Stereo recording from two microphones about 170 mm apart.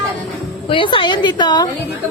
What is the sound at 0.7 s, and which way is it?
A woman's voice, 30° left (ahead or behind).